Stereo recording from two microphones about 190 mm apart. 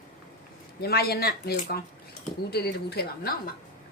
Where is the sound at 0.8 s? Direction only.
55° left (ahead or behind).